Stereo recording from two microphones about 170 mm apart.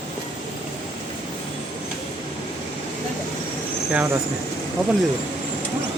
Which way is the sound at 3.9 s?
15° right (ahead or behind).